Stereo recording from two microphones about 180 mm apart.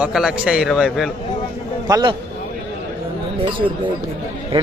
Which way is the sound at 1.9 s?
25° right (ahead or behind).